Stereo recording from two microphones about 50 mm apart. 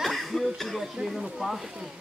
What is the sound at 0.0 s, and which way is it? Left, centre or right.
Chuckle, centre.